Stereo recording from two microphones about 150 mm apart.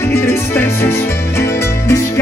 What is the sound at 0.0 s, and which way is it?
Music, 15° left (ahead or behind).